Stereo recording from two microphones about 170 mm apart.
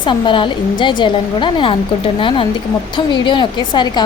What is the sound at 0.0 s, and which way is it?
Speech, 30° left (ahead or behind).